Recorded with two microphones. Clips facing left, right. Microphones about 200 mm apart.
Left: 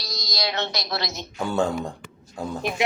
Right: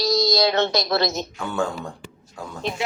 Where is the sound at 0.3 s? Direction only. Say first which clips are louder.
Right 9 dB; 50° right (ahead or behind).